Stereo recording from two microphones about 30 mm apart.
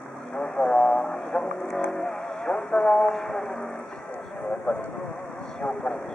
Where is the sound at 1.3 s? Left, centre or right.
Left.